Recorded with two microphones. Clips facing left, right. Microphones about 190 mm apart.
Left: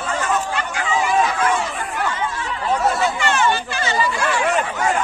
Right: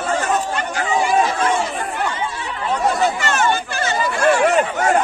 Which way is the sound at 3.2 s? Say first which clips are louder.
Even; 45° right (ahead or behind).